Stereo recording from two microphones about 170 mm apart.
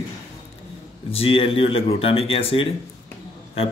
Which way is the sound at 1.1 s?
35° left (ahead or behind).